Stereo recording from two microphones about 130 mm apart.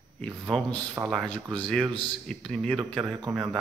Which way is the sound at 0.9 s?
5° right (ahead or behind).